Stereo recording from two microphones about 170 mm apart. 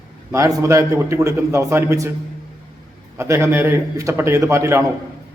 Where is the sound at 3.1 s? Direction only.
15° right (ahead or behind).